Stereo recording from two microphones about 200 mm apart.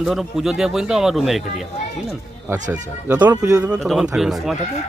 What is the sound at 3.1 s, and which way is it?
Speech, 10° right (ahead or behind).